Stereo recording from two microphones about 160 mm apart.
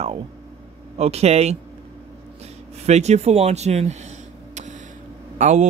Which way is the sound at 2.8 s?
45° right (ahead or behind).